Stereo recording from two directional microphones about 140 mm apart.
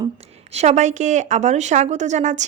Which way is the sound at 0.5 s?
55° right (ahead or behind).